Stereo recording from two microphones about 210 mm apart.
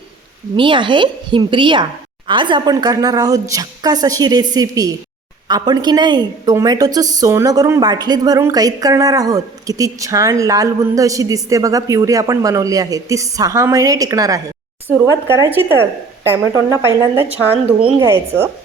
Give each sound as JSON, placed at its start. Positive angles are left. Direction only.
{"t": 0.5, "sound": "a woman's voice", "side_deg": -20}